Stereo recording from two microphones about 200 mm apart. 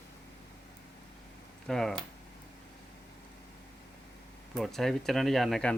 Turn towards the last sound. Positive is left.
turn(degrees=0)  # may be behind; listen again after turning